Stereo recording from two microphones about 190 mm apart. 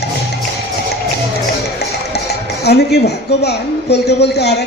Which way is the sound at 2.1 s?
60° left (ahead or behind).